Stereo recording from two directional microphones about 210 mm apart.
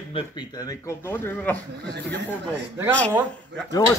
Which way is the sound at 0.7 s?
15° left (ahead or behind).